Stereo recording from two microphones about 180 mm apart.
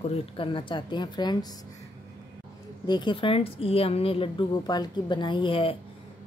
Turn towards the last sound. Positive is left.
turn(degrees=30)  # may be behind; listen again after turning